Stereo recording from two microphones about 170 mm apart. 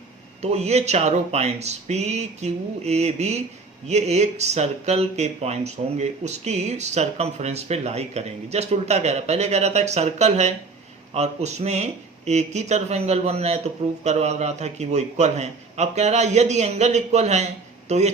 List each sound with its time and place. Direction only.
0.5 s speech: 40° right (ahead or behind)